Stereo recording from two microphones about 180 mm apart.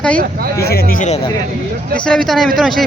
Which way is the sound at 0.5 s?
60° left (ahead or behind).